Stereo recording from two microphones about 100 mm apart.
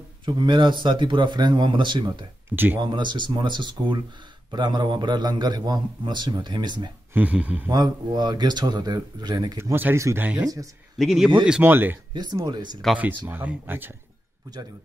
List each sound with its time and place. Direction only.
0.2 s a man's voice: 50° right (ahead or behind)
2.5 s speech: 20° right (ahead or behind)
2.8 s a man's voice: 50° right (ahead or behind)
7.2 s speech: 15° right (ahead or behind)
7.7 s a man's voice: 45° right (ahead or behind)
9.6 s speech: 25° right (ahead or behind)
10.4 s speech: 35° right (ahead or behind)
11.0 s a man's voice: centre (ahead or behind)
11.6 s speech: 20° right (ahead or behind)
12.1 s speech: 45° right (ahead or behind)
12.8 s a man's voice: centre (ahead or behind)
13.3 s speech: 20° right (ahead or behind)